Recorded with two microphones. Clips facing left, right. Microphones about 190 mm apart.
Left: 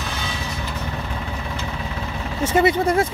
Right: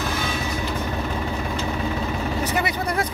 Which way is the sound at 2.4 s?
25° left (ahead or behind).